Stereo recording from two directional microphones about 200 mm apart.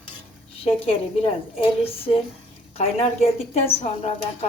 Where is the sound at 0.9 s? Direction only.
30° left (ahead or behind).